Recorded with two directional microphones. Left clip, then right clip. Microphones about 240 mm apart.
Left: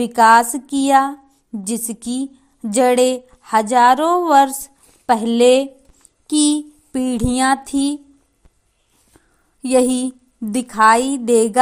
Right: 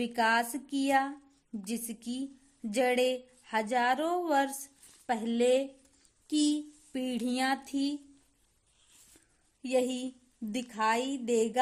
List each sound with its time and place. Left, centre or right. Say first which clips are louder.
0.0 s a woman's voice: left 17 dB; centre
6.2 s a sound: left 13 dB; centre
9.6 s a woman's voice: left 14 dB; left